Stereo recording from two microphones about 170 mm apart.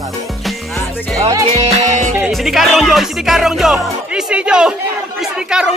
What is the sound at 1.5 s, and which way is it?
Music, 40° right (ahead or behind).